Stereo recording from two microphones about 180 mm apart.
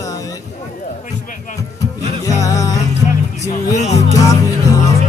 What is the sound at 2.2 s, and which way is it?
Music, 20° left (ahead or behind).